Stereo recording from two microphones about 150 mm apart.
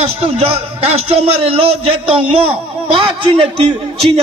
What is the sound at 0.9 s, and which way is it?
Speech, 45° right (ahead or behind).